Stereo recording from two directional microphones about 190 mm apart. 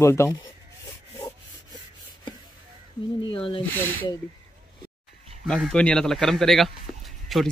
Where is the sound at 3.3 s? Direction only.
25° left (ahead or behind).